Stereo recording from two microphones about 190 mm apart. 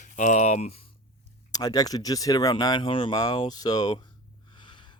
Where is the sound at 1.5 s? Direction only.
20° left (ahead or behind).